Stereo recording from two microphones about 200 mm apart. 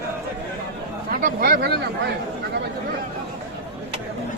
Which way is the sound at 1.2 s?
50° right (ahead or behind).